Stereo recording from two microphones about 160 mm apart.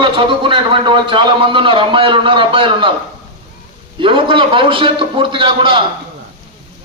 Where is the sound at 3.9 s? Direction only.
30° right (ahead or behind).